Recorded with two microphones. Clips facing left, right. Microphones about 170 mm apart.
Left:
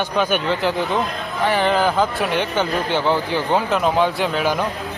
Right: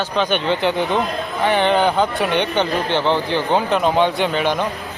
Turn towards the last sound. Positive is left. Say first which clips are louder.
# right 1 dB
turn(degrees=5)  # may be behind; listen again after turning